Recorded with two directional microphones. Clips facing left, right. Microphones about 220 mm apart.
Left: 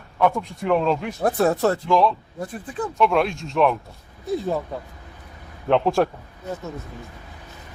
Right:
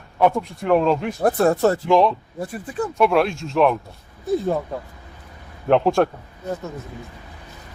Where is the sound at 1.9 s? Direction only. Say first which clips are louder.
Right 3 dB; 20° right (ahead or behind).